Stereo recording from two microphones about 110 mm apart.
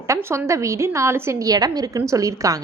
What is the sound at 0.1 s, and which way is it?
A woman's voice, 25° right (ahead or behind).